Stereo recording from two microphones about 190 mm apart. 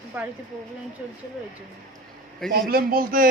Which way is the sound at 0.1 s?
10° right (ahead or behind).